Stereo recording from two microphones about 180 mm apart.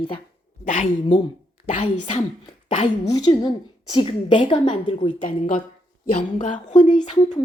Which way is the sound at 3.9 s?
25° left (ahead or behind).